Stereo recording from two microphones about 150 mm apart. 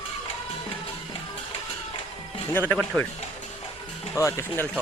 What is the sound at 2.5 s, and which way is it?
Speech, 10° left (ahead or behind).